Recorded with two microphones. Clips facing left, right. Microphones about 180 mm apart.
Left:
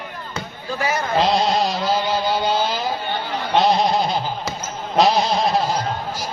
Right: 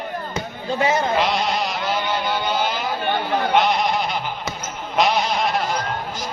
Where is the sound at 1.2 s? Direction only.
30° left (ahead or behind).